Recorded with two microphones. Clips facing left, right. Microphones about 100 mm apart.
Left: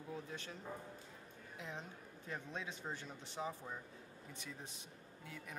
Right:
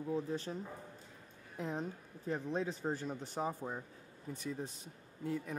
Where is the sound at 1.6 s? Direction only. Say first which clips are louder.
Right 10 dB; 40° right (ahead or behind).